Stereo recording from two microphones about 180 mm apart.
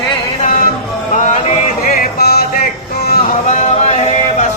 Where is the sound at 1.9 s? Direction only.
60° left (ahead or behind).